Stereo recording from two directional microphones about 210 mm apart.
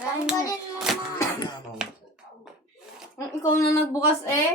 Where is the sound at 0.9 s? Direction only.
Centre (ahead or behind).